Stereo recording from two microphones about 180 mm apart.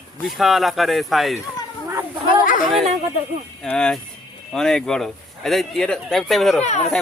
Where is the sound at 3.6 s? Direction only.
5° left (ahead or behind).